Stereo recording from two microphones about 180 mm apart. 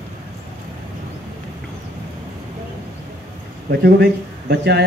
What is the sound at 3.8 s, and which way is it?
Speech, 65° right (ahead or behind).